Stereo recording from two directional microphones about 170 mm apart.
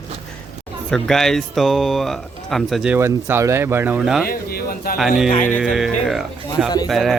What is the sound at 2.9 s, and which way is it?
Speech, 15° right (ahead or behind).